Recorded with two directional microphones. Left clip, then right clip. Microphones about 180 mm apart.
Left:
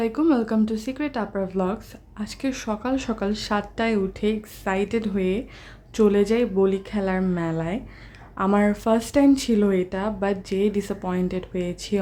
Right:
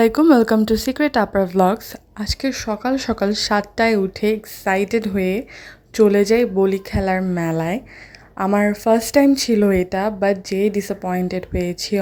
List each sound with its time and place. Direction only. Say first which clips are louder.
0.0 s a woman's voice: right 8 dB; 40° right (ahead or behind)
8.4 s a woman's voice: right 5 dB; 15° right (ahead or behind)